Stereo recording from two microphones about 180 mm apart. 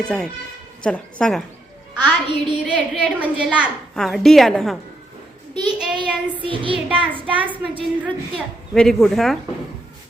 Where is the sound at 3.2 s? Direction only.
5° right (ahead or behind).